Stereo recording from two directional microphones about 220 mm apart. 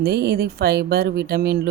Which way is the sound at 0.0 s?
45° right (ahead or behind).